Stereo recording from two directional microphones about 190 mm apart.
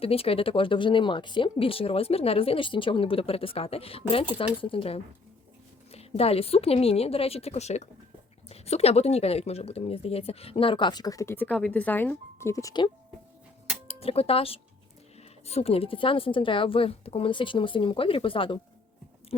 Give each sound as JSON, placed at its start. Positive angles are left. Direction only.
{"t": 0.0, "sound": "a woman's voice", "side_deg": 30}
{"t": 13.8, "sound": "speech", "side_deg": 30}
{"t": 19.3, "sound": "a sound", "side_deg": 30}